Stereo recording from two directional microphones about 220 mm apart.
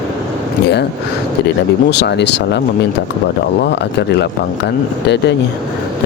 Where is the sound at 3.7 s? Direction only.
50° left (ahead or behind).